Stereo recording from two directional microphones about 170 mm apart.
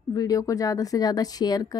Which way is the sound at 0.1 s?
20° left (ahead or behind).